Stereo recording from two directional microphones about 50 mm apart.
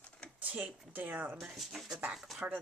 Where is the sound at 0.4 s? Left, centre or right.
Right.